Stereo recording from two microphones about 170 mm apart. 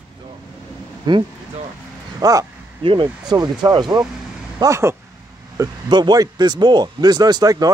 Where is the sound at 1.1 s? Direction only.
25° right (ahead or behind).